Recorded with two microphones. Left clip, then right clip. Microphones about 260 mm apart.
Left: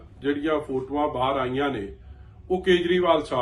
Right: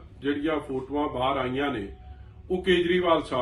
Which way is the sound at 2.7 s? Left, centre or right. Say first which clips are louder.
Left 2 dB; centre.